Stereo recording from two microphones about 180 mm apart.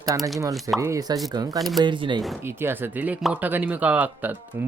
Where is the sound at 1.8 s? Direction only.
25° right (ahead or behind).